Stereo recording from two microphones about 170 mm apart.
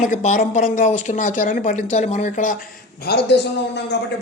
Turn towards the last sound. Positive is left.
turn(degrees=85)